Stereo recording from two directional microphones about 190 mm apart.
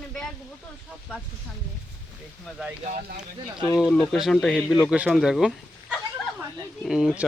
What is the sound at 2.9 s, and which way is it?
Speech, 45° right (ahead or behind).